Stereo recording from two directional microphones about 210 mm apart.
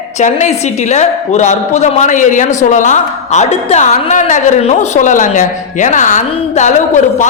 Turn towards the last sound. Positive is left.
turn(degrees=35)  # may be behind; listen again after turning